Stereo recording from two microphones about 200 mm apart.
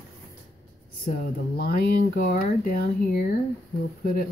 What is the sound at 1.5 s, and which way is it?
Speech, 50° left (ahead or behind).